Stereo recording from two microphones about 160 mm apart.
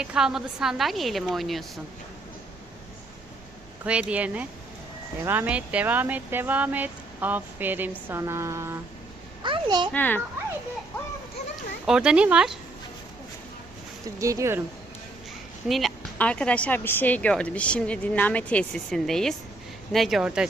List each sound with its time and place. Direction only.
0.0 s a woman's voice: 5° right (ahead or behind)
3.8 s speech: 10° right (ahead or behind)
9.4 s a child's voice: 30° right (ahead or behind)
9.9 s a woman's voice: 10° left (ahead or behind)
11.9 s a woman's voice: 5° right (ahead or behind)
14.2 s speech: 20° right (ahead or behind)
15.6 s a woman's voice: centre (ahead or behind)